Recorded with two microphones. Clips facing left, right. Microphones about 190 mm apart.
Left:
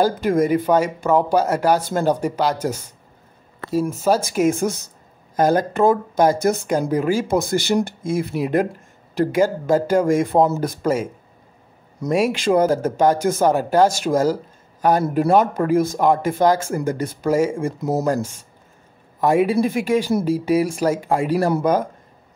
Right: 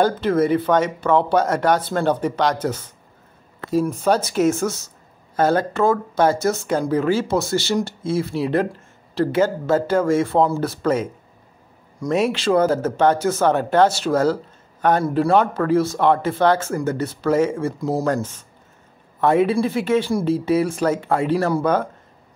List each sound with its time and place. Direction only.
0.0 s speech: 10° left (ahead or behind)
12.1 s a woman's voice: 10° left (ahead or behind)